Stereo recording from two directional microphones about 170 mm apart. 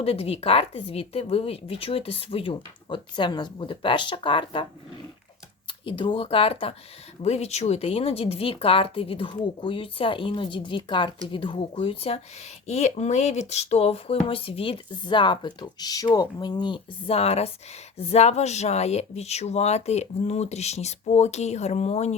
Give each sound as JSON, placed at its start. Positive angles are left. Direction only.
{"t": 0.0, "sound": "speech", "side_deg": 35}
{"t": 5.8, "sound": "speech", "side_deg": 30}